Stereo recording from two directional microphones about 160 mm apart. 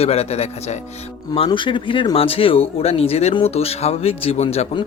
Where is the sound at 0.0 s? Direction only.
40° left (ahead or behind).